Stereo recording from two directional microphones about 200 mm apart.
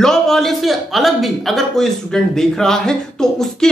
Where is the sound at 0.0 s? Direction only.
Centre (ahead or behind).